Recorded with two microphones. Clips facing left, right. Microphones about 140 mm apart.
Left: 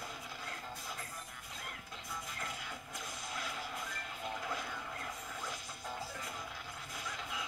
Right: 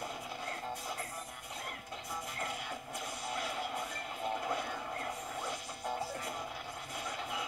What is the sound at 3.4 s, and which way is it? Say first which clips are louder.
Music: right 5 dB; 30° right (ahead or behind).